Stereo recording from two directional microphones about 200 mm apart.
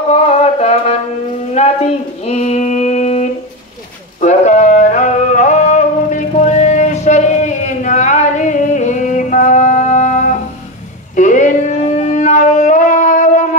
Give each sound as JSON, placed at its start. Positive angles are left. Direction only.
{"t": 0.1, "sound": "music", "side_deg": 30}
{"t": 1.5, "sound": "a sound", "side_deg": 35}
{"t": 4.2, "sound": "music", "side_deg": 35}
{"t": 11.1, "sound": "shofar", "side_deg": 40}